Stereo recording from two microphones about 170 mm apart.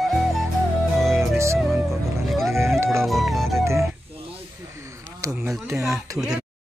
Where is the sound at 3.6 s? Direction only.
15° right (ahead or behind).